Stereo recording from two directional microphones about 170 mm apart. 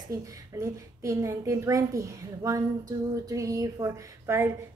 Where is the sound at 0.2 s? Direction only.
15° right (ahead or behind).